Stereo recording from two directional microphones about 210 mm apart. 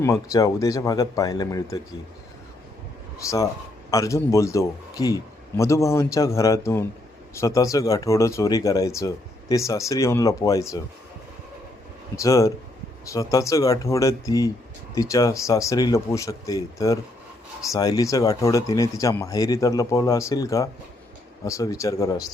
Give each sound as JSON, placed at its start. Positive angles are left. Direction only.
{"t": 0.0, "sound": "speech", "side_deg": 15}
{"t": 3.2, "sound": "speech", "side_deg": 15}
{"t": 12.1, "sound": "speech", "side_deg": 15}